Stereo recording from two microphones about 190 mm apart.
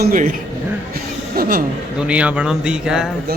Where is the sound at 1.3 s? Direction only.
50° right (ahead or behind).